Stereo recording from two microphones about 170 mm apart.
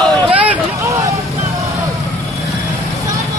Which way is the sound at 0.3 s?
10° right (ahead or behind).